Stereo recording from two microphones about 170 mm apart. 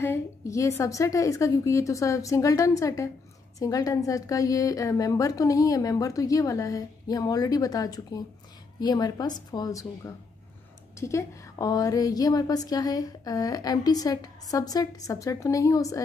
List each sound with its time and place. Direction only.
0.0 s speech: 15° left (ahead or behind)